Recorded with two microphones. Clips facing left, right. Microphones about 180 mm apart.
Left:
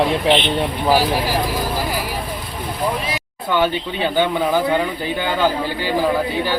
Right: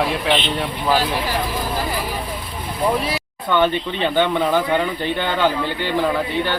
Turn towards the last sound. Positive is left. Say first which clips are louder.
# left 1 dB
turn(degrees=5)  # may be behind; listen again after turning